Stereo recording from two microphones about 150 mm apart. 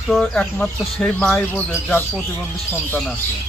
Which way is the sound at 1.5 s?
15° left (ahead or behind).